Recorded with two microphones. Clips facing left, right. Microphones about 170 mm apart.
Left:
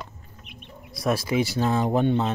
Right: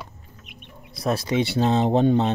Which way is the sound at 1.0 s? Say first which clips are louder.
Right 1 dB; 25° right (ahead or behind).